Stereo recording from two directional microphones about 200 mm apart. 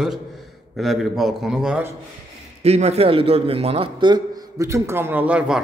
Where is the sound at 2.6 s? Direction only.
30° right (ahead or behind).